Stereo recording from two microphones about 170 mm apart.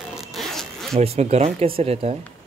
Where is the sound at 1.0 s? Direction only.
35° right (ahead or behind).